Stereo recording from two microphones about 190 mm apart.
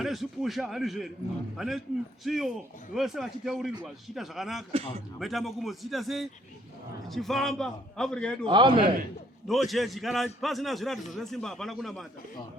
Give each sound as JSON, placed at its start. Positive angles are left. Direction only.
{"t": 0.0, "sound": "a man's voice", "side_deg": 0}
{"t": 8.4, "sound": "a man's voice", "side_deg": -25}
{"t": 9.5, "sound": "a man's voice", "side_deg": 0}